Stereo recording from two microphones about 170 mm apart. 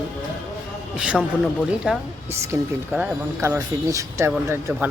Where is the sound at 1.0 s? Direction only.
Centre (ahead or behind).